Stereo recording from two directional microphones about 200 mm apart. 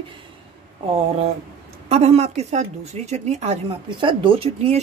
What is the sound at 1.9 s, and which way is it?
A woman's voice, 30° right (ahead or behind).